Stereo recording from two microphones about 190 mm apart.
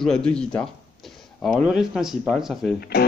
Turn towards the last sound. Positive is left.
turn(degrees=55)  # may be behind; listen again after turning